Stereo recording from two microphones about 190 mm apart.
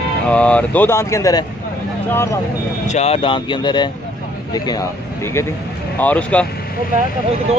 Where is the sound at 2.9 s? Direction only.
35° left (ahead or behind).